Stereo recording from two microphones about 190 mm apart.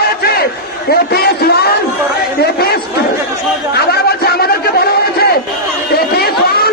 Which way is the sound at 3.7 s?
55° left (ahead or behind).